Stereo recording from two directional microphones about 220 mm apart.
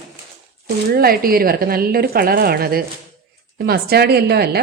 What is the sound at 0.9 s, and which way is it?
A woman's voice, 45° right (ahead or behind).